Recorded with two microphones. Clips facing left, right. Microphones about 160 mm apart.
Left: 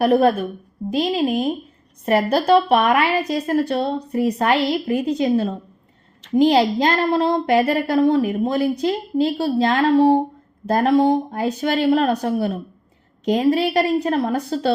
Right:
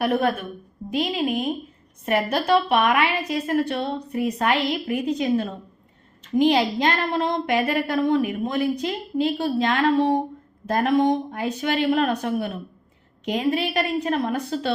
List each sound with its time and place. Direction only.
0.0 s a woman's voice: 35° left (ahead or behind)